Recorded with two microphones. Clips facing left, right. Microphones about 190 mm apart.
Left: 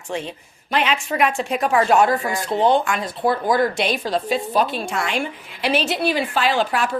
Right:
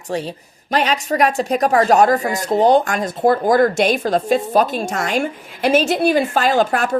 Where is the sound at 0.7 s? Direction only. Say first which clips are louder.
Right 3 dB; 40° right (ahead or behind).